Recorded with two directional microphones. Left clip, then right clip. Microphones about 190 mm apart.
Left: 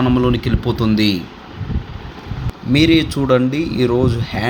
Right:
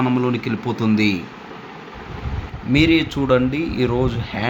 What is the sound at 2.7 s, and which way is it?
Speech, 15° left (ahead or behind).